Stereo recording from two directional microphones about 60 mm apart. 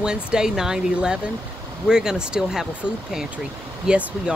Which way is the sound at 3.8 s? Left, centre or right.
Centre.